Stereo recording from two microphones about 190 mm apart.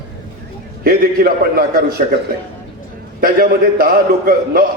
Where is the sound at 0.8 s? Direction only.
50° right (ahead or behind).